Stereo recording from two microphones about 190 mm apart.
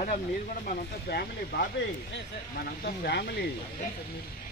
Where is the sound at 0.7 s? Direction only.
50° left (ahead or behind).